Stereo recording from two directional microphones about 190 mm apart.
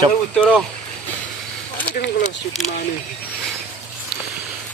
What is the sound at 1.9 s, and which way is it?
Speech, 40° left (ahead or behind).